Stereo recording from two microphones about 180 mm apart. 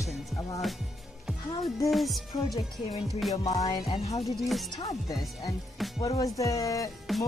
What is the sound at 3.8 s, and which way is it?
Music, 35° left (ahead or behind).